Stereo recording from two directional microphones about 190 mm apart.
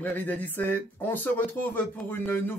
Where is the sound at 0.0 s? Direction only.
10° left (ahead or behind).